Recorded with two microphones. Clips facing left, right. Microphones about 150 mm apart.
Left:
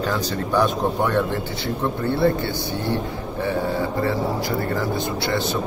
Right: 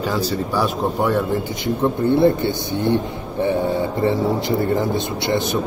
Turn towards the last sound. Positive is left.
turn(degrees=-20)  # may be behind; listen again after turning